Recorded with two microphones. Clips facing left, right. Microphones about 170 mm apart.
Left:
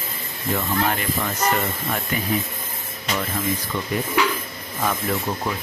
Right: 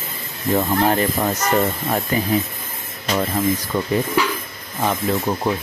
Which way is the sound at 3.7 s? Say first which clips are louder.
Right 5 dB; 35° right (ahead or behind).